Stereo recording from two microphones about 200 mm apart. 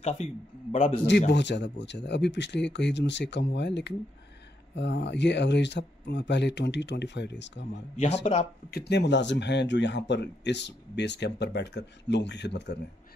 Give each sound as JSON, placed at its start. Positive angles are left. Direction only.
{"t": 0.0, "sound": "a man's voice", "side_deg": 35}
{"t": 1.3, "sound": "speech", "side_deg": 60}